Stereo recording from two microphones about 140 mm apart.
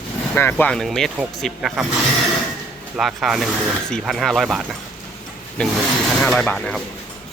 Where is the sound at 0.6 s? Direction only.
5° left (ahead or behind).